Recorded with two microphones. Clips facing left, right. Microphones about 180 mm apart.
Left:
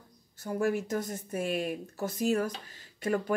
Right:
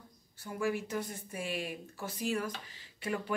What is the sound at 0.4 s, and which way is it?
Speech, 45° left (ahead or behind).